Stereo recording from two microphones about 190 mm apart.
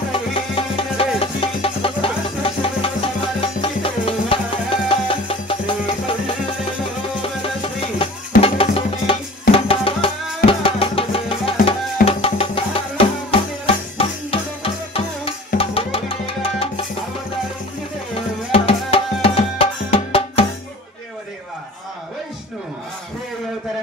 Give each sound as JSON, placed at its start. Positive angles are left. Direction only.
{"t": 0.1, "sound": "music", "side_deg": 30}
{"t": 18.1, "sound": "music", "side_deg": 30}